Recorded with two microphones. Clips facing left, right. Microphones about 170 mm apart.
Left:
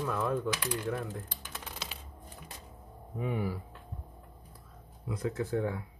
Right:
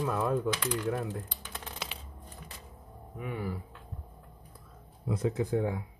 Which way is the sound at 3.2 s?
25° left (ahead or behind).